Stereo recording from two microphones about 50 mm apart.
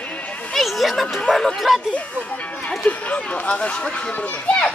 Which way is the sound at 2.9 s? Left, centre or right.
Left.